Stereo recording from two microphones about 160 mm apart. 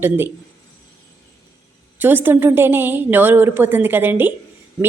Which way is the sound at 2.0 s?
15° right (ahead or behind).